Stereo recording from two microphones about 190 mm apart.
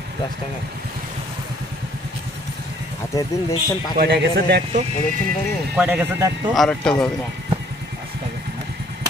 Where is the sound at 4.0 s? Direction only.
55° right (ahead or behind).